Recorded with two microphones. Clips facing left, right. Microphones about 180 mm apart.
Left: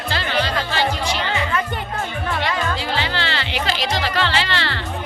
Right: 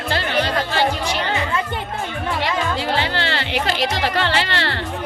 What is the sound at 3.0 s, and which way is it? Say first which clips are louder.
Music: right 2 dB; 55° right (ahead or behind).